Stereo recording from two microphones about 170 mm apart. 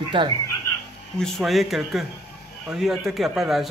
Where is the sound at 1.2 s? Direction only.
Centre (ahead or behind).